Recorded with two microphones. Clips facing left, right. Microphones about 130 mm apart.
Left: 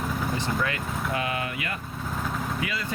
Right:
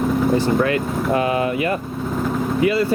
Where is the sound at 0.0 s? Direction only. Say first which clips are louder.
Right 11 dB; centre (ahead or behind).